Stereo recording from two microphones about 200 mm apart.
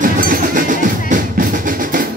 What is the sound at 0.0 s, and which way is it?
Drum, 40° right (ahead or behind).